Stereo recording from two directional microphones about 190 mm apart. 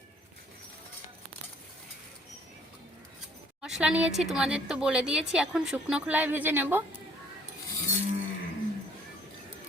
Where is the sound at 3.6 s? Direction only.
5° right (ahead or behind).